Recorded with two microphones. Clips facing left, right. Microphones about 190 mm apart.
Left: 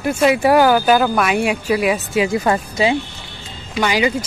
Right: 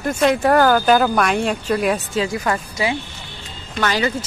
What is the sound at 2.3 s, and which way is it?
Speech, 25° left (ahead or behind).